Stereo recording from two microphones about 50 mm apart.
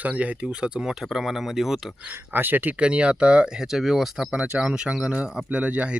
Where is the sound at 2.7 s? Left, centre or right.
Right; by 4.3 s centre.